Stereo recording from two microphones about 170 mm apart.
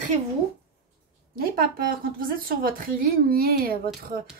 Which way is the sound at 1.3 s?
60° right (ahead or behind).